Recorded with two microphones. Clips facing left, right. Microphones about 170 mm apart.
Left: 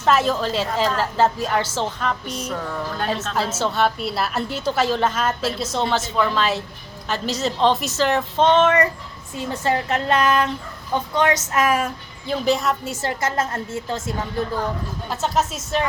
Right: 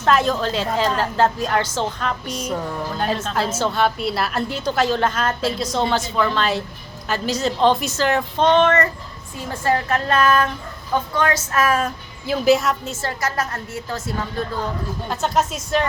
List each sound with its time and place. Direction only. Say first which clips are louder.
0.0 s a woman's voice: right 1 dB; 5° left (ahead or behind)
2.5 s a sound: right 2 dB; 15° right (ahead or behind)
3.0 s a woman's voice: right 2 dB; centre (ahead or behind)
9.3 s a woman's voice: right 1 dB; 20° left (ahead or behind)
12.2 s a woman's voice: right 4 dB; 5° right (ahead or behind)
12.8 s a woman's voice: left 1 dB; 15° left (ahead or behind)
15.1 s a woman's voice: right 1 dB; centre (ahead or behind)